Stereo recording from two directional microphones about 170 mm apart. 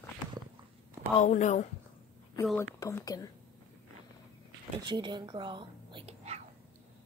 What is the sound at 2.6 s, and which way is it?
Speech, 15° left (ahead or behind).